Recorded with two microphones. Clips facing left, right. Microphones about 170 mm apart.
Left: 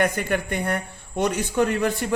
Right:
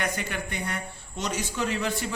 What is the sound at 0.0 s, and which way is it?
A man's voice, 55° left (ahead or behind).